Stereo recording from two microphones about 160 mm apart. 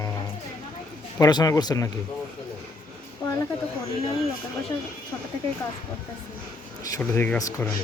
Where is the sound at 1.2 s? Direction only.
25° left (ahead or behind).